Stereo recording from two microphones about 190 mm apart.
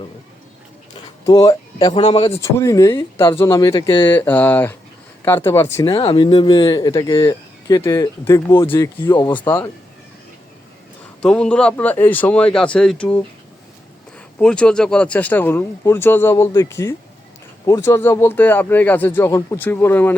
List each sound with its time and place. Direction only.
1.2 s speech: 20° left (ahead or behind)
1.9 s speech: 30° left (ahead or behind)
2.6 s speech: 15° left (ahead or behind)
5.8 s speech: 25° left (ahead or behind); by 9.6 s 10° left (ahead or behind)
11.2 s speech: 5° left (ahead or behind)
14.3 s speech: 5° left (ahead or behind)